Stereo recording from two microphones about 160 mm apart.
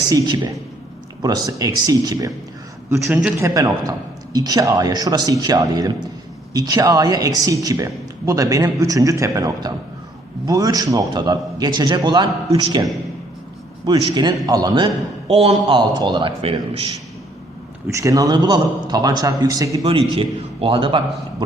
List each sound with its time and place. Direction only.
0.1 s a man's voice: 25° right (ahead or behind)
15.3 s a man's voice: 40° right (ahead or behind)
17.8 s a man's voice: 20° right (ahead or behind)
20.1 s a man's voice: 35° right (ahead or behind)